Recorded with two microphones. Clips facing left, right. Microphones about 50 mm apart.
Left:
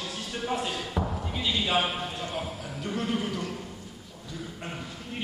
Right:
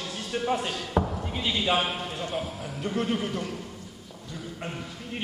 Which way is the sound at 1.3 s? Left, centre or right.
Centre.